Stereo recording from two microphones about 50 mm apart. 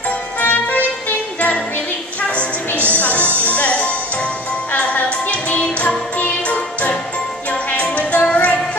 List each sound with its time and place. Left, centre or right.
0.4 s music: left
7.5 s jingle bell: left